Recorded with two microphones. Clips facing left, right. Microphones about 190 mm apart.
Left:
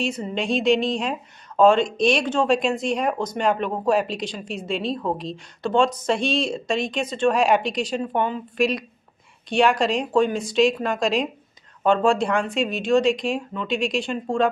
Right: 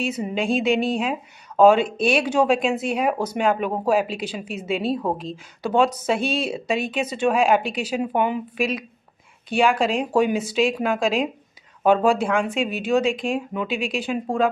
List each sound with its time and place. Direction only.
0.0 s a woman's voice: 5° right (ahead or behind)